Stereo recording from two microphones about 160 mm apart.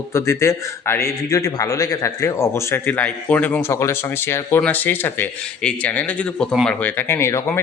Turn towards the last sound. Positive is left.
turn(degrees=15)  # may be behind; listen again after turning